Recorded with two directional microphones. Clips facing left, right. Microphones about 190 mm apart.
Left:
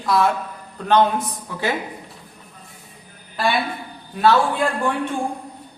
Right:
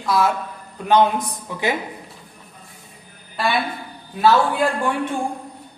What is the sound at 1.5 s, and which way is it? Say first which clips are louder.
Speech: right 2 dB; 15° right (ahead or behind).